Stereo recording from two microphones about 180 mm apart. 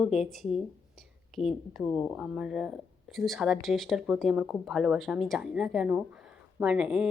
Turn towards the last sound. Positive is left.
turn(degrees=-5)  # may be behind; listen again after turning